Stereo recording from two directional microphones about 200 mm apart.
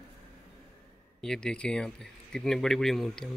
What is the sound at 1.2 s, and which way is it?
Speech, 5° left (ahead or behind).